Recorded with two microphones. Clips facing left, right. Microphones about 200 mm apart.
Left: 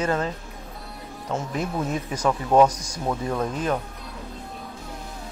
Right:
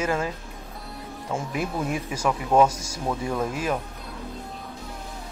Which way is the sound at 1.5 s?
10° right (ahead or behind).